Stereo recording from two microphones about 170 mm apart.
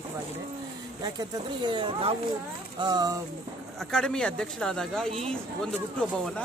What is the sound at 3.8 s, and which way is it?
Speech, 5° left (ahead or behind).